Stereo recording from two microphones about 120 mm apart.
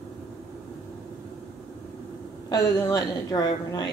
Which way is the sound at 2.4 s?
30° left (ahead or behind).